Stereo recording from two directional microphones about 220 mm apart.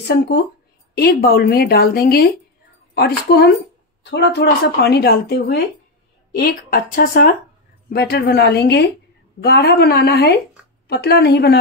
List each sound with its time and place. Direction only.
0.0 s speech: 50° left (ahead or behind)